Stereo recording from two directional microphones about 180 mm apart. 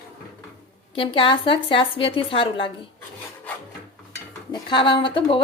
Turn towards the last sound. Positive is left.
turn(degrees=30)  # may be behind; listen again after turning